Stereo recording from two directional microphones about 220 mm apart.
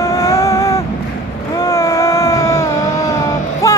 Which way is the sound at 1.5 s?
15° left (ahead or behind).